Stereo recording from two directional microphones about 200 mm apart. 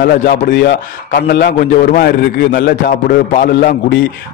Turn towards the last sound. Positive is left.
turn(degrees=55)  # may be behind; listen again after turning